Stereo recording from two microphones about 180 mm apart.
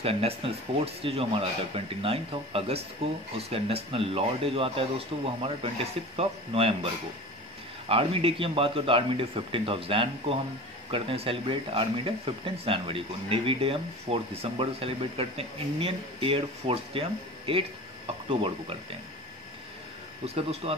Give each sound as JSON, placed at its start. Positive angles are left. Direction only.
{"t": 0.0, "sound": "speech", "side_deg": -35}
{"t": 7.9, "sound": "speech", "side_deg": -30}
{"t": 20.2, "sound": "speech", "side_deg": -35}